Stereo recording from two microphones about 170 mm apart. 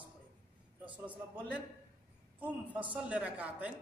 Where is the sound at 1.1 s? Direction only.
10° right (ahead or behind).